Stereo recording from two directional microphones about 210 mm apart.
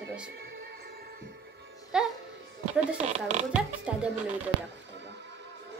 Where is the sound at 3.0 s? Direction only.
35° right (ahead or behind).